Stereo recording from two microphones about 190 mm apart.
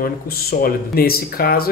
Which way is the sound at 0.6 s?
50° left (ahead or behind).